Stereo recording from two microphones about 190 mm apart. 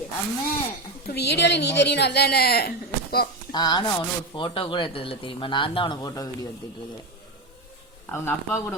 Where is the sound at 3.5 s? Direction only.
20° left (ahead or behind).